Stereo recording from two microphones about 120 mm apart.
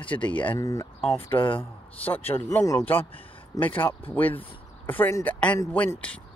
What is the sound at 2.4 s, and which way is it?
Speech, 25° left (ahead or behind).